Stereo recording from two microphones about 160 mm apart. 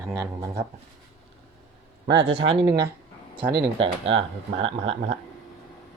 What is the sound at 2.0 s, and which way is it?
Speech, 90° right.